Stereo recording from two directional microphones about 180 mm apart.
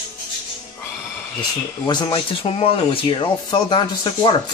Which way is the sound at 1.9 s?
25° left (ahead or behind).